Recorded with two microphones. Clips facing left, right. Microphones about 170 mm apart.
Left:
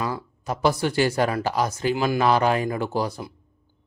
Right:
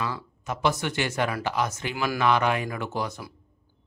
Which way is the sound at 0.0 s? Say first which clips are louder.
Left 3 dB; 40° left (ahead or behind).